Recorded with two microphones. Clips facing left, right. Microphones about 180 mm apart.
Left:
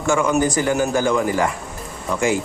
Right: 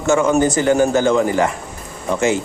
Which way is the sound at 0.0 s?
25° right (ahead or behind).